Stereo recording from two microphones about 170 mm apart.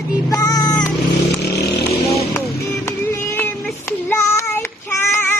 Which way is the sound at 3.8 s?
15° left (ahead or behind).